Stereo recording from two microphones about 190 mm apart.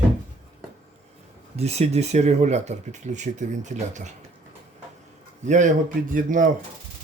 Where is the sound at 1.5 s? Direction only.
35° right (ahead or behind).